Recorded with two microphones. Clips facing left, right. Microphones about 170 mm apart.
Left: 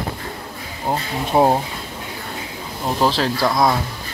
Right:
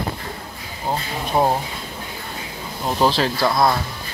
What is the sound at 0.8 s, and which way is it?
Speech, 20° left (ahead or behind).